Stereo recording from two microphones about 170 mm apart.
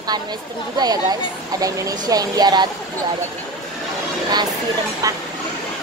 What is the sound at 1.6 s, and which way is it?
Speech, 20° right (ahead or behind).